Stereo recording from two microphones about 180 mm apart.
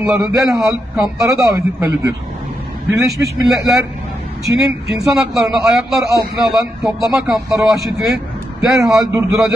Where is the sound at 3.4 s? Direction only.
Centre (ahead or behind).